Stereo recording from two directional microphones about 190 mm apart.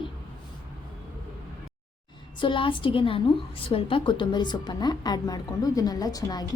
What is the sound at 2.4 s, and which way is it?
A woman's voice, 25° left (ahead or behind).